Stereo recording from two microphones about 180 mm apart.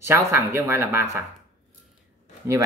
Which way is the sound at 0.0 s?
15° right (ahead or behind).